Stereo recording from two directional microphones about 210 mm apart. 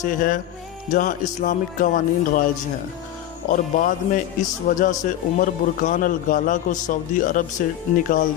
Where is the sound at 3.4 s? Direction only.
40° left (ahead or behind).